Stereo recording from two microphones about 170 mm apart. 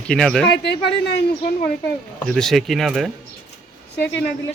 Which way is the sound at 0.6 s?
80° left.